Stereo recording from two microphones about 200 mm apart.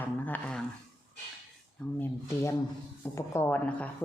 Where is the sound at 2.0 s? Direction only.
15° left (ahead or behind).